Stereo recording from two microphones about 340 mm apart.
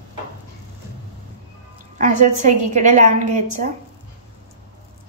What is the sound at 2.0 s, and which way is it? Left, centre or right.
A woman's voice, right.